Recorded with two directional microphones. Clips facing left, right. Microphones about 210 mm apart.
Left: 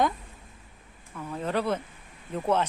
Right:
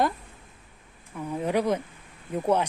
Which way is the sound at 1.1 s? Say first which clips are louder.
Right 3 dB; 15° right (ahead or behind).